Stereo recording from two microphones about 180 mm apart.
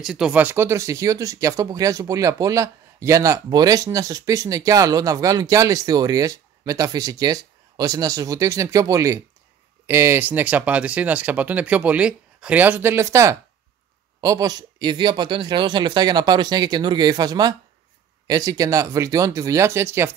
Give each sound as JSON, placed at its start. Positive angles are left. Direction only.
{"t": 0.0, "sound": "speech", "side_deg": -5}